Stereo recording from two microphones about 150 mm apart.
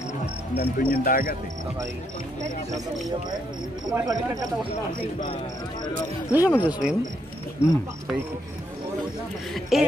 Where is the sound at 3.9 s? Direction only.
25° right (ahead or behind).